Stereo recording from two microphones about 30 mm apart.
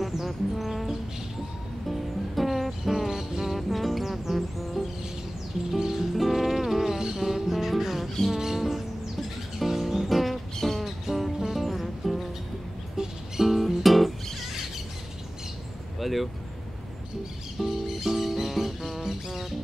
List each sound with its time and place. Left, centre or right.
0.0 s music: centre
3.1 s music: centre
3.5 s music: centre
6.1 s music: centre
8.3 s music: centre
10.5 s music: centre
10.8 s music: centre
12.9 s music: right
13.5 s music: centre
16.0 s a sound: centre
17.6 s music: centre